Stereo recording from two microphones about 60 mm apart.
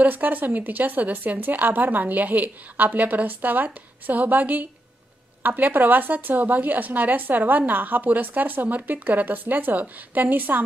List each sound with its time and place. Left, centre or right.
0.0 s speech: right